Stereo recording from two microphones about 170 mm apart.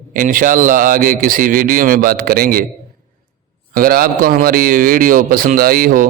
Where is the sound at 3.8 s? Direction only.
60° right (ahead or behind).